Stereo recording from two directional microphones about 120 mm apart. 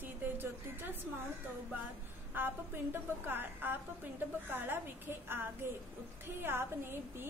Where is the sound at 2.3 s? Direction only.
15° right (ahead or behind).